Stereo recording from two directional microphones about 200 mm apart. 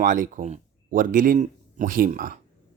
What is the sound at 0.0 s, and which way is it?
Speech, 40° right (ahead or behind).